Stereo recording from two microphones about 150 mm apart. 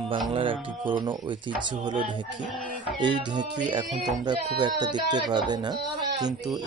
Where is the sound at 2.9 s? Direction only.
30° right (ahead or behind).